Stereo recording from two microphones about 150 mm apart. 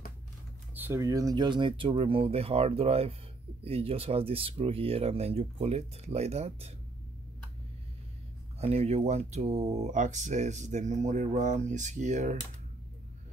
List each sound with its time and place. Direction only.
0.7 s a sound: 15° right (ahead or behind)
1.0 s speech: 25° right (ahead or behind); by 6.7 s 45° right (ahead or behind)
8.5 s speech: 45° right (ahead or behind)